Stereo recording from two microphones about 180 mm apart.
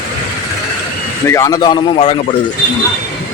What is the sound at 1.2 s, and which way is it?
Speech, 15° left (ahead or behind).